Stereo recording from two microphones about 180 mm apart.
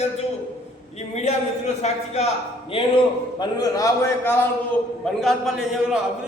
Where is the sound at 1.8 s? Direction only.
35° left (ahead or behind).